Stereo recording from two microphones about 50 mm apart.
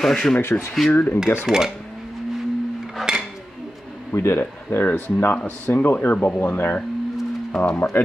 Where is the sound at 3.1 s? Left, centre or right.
Centre.